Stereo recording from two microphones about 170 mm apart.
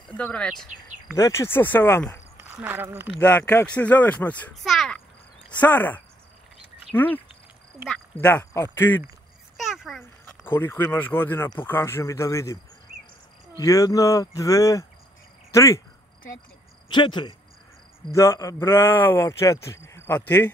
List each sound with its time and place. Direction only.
0.2 s speech: 5° left (ahead or behind)
1.1 s speech: 15° left (ahead or behind)
2.3 s speech: 10° right (ahead or behind)
3.2 s speech: 10° left (ahead or behind)
8.2 s speech: 10° left (ahead or behind)
9.6 s a sound: centre (ahead or behind)
10.4 s speech: 15° left (ahead or behind)
13.6 s speech: 20° left (ahead or behind)
16.9 s speech: 25° left (ahead or behind)